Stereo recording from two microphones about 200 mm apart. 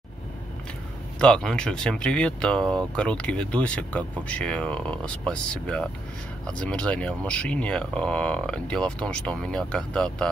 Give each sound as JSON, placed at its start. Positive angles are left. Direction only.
{"t": 1.2, "sound": "speech", "side_deg": 5}